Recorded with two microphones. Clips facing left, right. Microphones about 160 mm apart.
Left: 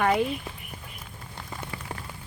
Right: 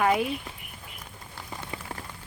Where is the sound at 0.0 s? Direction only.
5° right (ahead or behind).